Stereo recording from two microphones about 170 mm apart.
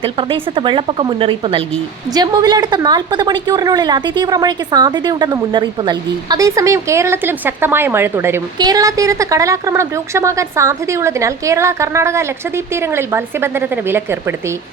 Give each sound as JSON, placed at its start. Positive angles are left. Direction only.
{"t": 0.0, "sound": "a woman's voice", "side_deg": -30}